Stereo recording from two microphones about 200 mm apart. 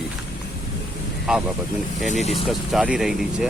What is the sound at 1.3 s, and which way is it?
Speech, 5° right (ahead or behind).